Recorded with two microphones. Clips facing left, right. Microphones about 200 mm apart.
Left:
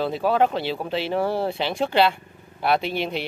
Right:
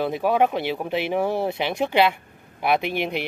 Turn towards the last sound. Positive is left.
turn(degrees=-15)  # may be behind; listen again after turning